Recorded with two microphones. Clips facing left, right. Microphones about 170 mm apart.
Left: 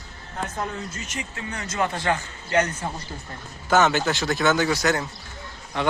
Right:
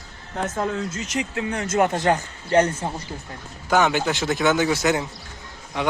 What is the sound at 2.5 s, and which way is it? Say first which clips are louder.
Speech: right 4 dB; 30° right (ahead or behind).